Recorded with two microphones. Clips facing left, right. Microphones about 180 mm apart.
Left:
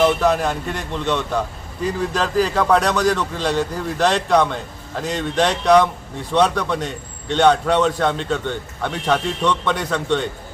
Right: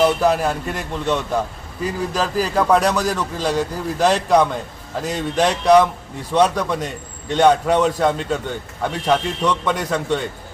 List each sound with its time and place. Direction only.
0.0 s a man's voice: 5° right (ahead or behind)